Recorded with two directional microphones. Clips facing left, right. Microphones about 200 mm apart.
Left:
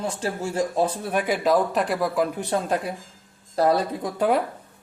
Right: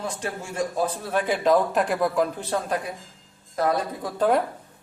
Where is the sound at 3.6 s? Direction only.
35° left (ahead or behind).